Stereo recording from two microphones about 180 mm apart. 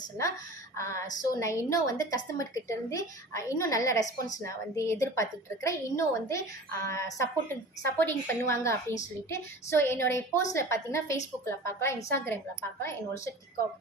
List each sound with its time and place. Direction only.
0.2 s a woman's voice: 15° left (ahead or behind)